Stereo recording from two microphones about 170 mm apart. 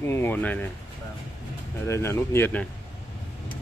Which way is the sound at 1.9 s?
15° left (ahead or behind).